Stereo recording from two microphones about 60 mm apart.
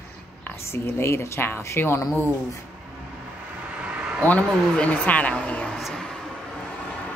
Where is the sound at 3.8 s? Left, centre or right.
Centre.